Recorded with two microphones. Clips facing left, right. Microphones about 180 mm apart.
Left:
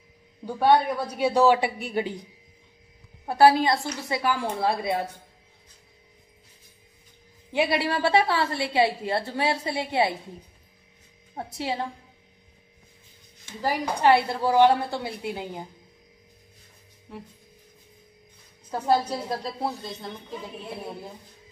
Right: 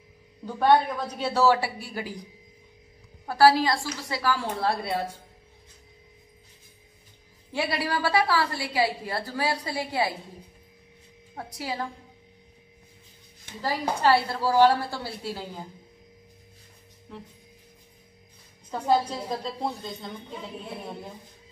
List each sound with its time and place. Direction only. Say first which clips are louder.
0.6 s a woman's voice: left 1 dB; 10° left (ahead or behind)
3.3 s a woman's voice: left 1 dB; 25° left (ahead or behind)
7.5 s a woman's voice: left 4 dB; 20° left (ahead or behind)
11.3 s a woman's voice: left 3 dB; 25° left (ahead or behind)
13.6 s a woman's voice: left 2 dB; 15° left (ahead or behind)
18.7 s a woman's voice: left 1 dB; 10° left (ahead or behind)